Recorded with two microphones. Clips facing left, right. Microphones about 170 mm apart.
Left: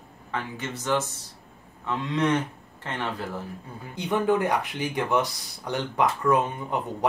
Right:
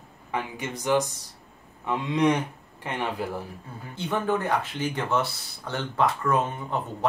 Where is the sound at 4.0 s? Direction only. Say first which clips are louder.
Left 3 dB; 15° left (ahead or behind).